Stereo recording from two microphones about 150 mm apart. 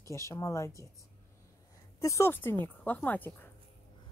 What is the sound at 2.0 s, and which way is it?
Speech, 20° left (ahead or behind).